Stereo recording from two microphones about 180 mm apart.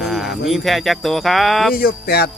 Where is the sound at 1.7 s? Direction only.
60° left (ahead or behind).